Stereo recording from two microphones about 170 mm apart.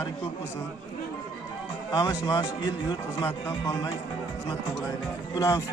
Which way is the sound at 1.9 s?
25° left (ahead or behind).